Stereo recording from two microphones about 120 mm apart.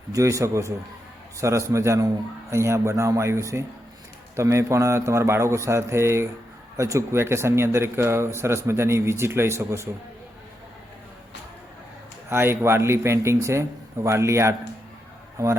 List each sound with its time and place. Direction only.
0.1 s speech: 25° right (ahead or behind)
12.3 s speech: 20° right (ahead or behind)